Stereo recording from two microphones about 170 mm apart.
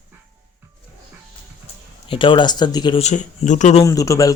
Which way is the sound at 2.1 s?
30° left (ahead or behind).